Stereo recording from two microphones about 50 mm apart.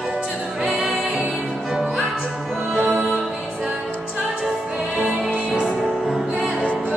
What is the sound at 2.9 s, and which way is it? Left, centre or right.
Music, centre.